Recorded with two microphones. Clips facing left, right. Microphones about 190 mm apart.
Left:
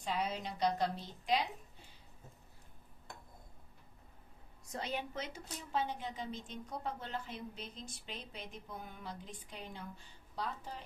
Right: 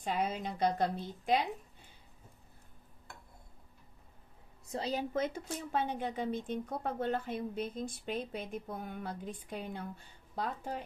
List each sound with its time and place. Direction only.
0.0 s speech: 50° right (ahead or behind)
4.6 s a woman's voice: 30° right (ahead or behind)
5.1 s speech: 55° right (ahead or behind)